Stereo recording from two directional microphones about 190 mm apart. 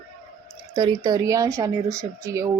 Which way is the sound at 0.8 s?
20° right (ahead or behind).